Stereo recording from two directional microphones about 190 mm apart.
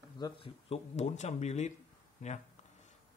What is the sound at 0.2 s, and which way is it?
Speech, 30° left (ahead or behind).